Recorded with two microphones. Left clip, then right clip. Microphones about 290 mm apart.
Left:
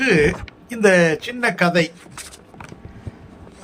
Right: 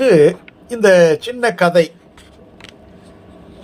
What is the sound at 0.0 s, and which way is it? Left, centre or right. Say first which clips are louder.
Speech: right 6 dB; centre.